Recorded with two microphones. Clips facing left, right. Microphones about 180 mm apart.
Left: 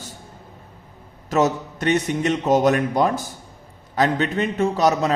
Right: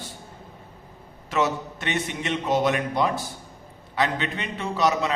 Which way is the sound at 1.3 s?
40° left (ahead or behind).